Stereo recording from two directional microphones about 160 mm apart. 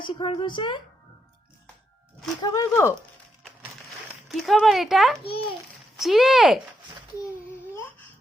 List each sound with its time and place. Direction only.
0.0 s speech: 30° left (ahead or behind)
2.4 s speech: 20° left (ahead or behind)
4.3 s speech: centre (ahead or behind)